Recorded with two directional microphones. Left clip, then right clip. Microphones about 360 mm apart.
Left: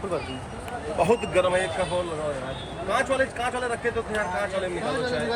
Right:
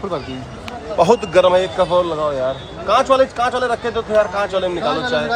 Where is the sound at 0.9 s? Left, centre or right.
Right.